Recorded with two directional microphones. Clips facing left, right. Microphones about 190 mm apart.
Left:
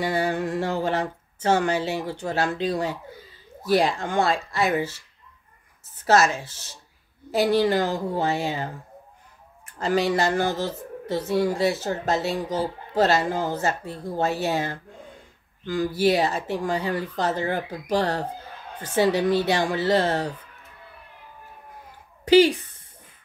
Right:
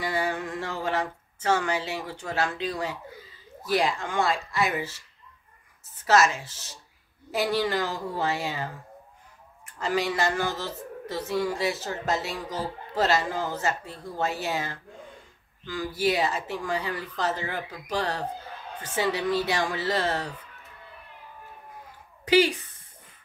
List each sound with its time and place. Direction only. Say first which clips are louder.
0.0 s a sound: left 4 dB; 35° left (ahead or behind)
3.6 s a woman's voice: left 4 dB; 35° left (ahead or behind)
6.0 s a woman's voice: left 2 dB; 30° left (ahead or behind)
9.8 s a woman's voice: left 4 dB; 35° left (ahead or behind)